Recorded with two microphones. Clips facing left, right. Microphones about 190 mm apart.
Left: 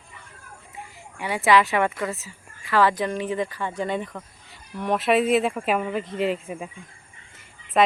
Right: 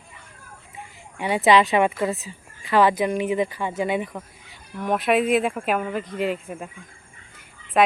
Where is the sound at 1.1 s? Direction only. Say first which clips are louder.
Right 2 dB; 20° right (ahead or behind); by 6.7 s centre (ahead or behind).